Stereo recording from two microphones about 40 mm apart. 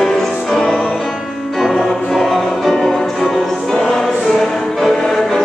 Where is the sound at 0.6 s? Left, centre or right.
Centre.